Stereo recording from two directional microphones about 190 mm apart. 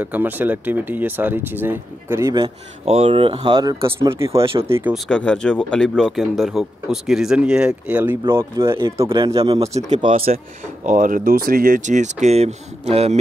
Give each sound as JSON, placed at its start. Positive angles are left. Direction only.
{"t": 0.0, "sound": "speech", "side_deg": -10}
{"t": 2.4, "sound": "speech", "side_deg": -30}
{"t": 4.4, "sound": "speech", "side_deg": -30}
{"t": 4.6, "sound": "speech", "side_deg": -15}
{"t": 4.9, "sound": "speech", "side_deg": 5}
{"t": 9.1, "sound": "speech", "side_deg": -30}
{"t": 10.9, "sound": "speech", "side_deg": -45}